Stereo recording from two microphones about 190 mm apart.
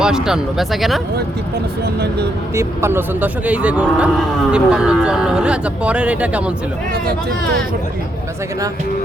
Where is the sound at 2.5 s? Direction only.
15° right (ahead or behind).